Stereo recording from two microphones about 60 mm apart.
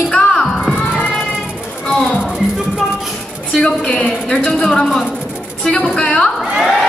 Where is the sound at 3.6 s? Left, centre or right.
Centre.